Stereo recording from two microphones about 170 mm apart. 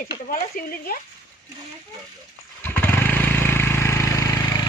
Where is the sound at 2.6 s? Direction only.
10° left (ahead or behind).